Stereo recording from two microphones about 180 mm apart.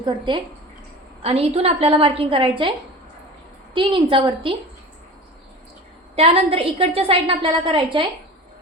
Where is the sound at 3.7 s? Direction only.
30° right (ahead or behind).